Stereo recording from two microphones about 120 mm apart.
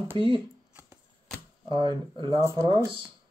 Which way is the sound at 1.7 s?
40° right (ahead or behind).